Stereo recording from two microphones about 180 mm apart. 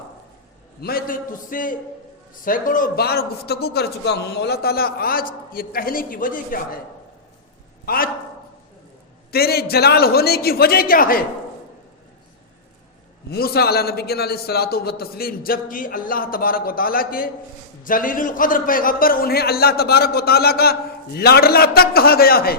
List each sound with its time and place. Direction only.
0.8 s a man's voice: 55° left (ahead or behind)
7.9 s a man's voice: 55° left (ahead or behind)
9.3 s a man's voice: 60° left (ahead or behind)
13.3 s a man's voice: 60° left (ahead or behind)